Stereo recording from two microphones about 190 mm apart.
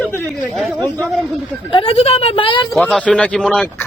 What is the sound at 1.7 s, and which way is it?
Speech, 30° left (ahead or behind).